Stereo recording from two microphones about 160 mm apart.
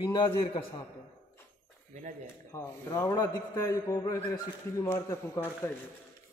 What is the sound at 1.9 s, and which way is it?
Speech, 50° right (ahead or behind).